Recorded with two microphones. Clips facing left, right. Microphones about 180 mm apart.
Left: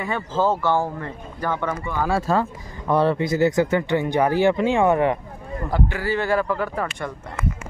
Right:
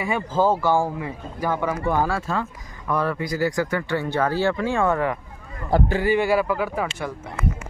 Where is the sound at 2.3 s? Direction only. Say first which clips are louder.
Left 5 dB; 40° left (ahead or behind).